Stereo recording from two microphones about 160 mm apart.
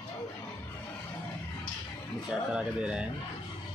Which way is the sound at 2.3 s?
5° right (ahead or behind).